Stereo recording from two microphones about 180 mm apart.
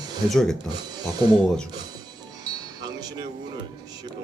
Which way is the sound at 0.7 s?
20° right (ahead or behind).